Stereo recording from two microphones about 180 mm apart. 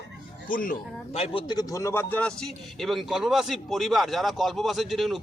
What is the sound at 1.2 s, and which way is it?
A man's voice, 30° left (ahead or behind).